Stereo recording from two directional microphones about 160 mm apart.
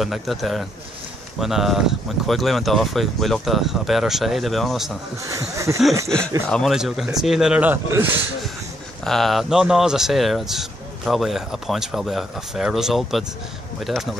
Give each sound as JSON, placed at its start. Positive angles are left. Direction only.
{"t": 0.0, "sound": "speech", "side_deg": 0}
{"t": 5.4, "sound": "speech", "side_deg": -20}
{"t": 6.0, "sound": "speech", "side_deg": 5}
{"t": 9.0, "sound": "speech", "side_deg": 0}